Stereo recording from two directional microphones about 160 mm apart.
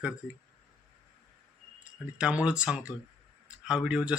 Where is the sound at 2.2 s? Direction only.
5° right (ahead or behind).